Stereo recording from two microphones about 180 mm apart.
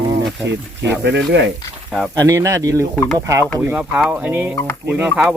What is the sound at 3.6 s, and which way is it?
Speech, 5° right (ahead or behind).